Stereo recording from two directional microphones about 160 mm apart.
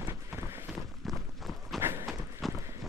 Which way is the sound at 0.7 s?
Centre (ahead or behind).